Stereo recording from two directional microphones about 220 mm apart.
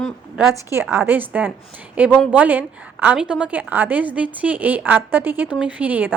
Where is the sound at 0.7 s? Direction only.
10° right (ahead or behind).